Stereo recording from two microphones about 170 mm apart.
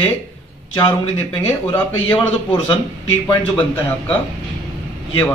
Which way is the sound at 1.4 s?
15° left (ahead or behind).